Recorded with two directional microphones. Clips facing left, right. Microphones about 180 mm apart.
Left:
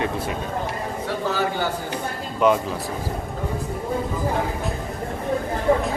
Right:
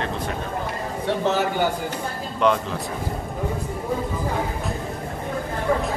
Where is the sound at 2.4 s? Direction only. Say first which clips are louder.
Left 2 dB; 5° left (ahead or behind).